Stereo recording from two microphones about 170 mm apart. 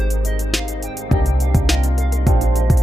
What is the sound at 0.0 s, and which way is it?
Music, centre (ahead or behind).